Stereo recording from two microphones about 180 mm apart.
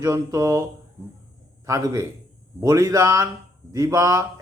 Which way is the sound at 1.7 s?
15° right (ahead or behind).